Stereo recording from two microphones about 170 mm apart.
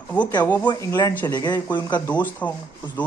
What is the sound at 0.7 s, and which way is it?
Speech, 20° left (ahead or behind).